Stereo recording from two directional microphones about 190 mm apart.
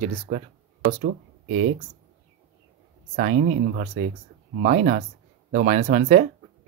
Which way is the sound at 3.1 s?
50° right (ahead or behind).